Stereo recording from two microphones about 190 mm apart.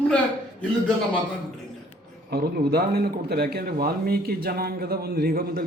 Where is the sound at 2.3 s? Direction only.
55° right (ahead or behind).